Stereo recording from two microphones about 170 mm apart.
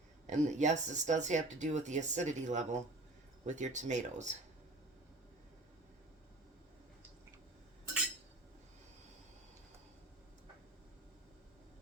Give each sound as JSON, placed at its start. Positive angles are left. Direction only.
{"t": 0.3, "sound": "speech", "side_deg": -45}